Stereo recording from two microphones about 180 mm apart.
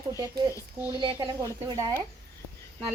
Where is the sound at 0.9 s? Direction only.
20° left (ahead or behind).